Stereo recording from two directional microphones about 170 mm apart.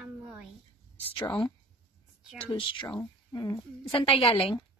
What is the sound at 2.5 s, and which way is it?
A woman's voice, 30° left (ahead or behind).